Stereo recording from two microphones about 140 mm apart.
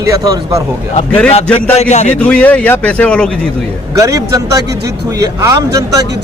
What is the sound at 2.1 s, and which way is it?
A man's voice, 10° left (ahead or behind).